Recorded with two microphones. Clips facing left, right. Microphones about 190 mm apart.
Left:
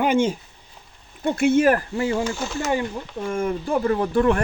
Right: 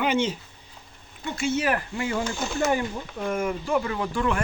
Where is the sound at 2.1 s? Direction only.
5° left (ahead or behind).